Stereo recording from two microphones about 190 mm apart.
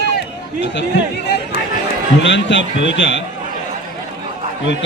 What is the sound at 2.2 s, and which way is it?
Speech, 75° left (ahead or behind).